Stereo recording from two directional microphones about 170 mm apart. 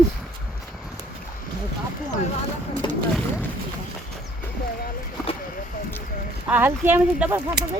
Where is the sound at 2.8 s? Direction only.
25° left (ahead or behind).